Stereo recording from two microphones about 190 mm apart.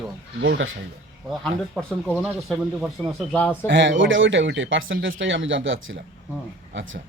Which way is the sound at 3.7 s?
75° right (ahead or behind).